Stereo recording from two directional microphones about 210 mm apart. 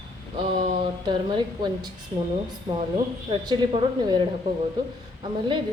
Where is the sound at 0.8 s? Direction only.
20° right (ahead or behind).